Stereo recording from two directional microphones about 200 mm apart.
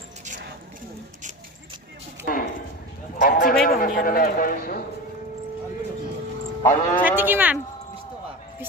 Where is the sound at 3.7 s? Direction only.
45° left (ahead or behind).